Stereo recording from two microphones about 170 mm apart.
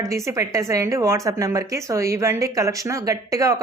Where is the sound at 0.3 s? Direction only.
20° right (ahead or behind).